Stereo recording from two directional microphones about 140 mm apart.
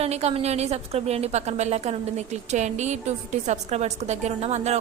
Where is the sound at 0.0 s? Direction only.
50° right (ahead or behind).